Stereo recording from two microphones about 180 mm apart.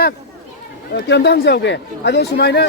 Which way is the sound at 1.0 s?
75° left (ahead or behind).